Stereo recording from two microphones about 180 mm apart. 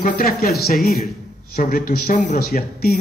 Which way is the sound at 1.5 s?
50° left (ahead or behind).